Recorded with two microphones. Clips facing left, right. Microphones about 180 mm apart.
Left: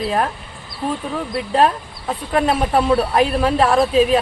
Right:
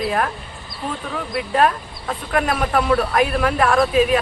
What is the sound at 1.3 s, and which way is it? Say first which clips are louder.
Speech: left 1 dB; 30° left (ahead or behind).